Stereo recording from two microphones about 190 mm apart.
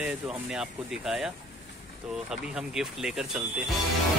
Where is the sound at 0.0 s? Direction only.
5° right (ahead or behind).